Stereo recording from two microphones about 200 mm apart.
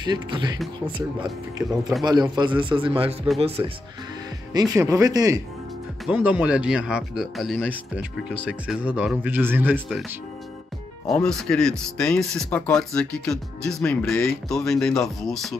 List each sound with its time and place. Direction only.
0.0 s speech: 20° right (ahead or behind)
1.6 s speech: 5° right (ahead or behind)
2.3 s speech: 25° right (ahead or behind)
4.6 s speech: 20° right (ahead or behind)
6.0 s speech: 5° right (ahead or behind)
11.1 s speech: 5° left (ahead or behind)